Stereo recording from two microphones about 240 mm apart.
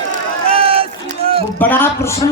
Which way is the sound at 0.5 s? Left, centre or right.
Right.